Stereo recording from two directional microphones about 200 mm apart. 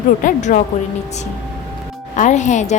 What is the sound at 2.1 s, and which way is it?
Speech, 35° left (ahead or behind).